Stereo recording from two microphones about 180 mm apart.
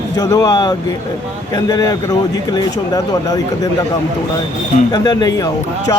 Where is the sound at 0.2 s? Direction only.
20° left (ahead or behind).